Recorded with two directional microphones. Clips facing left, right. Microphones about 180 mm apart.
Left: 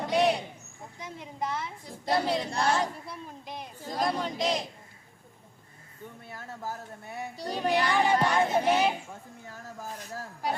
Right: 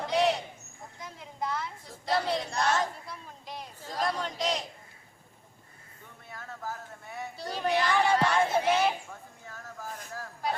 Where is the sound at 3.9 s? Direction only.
10° left (ahead or behind).